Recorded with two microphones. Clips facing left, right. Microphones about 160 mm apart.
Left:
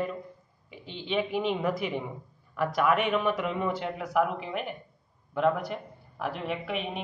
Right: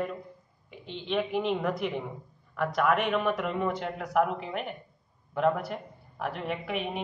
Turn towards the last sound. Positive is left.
turn(degrees=0)  # may be behind; listen again after turning